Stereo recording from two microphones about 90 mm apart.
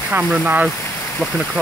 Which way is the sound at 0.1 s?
10° right (ahead or behind).